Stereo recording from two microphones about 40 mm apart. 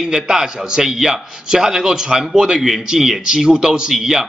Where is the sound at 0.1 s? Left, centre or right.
Centre.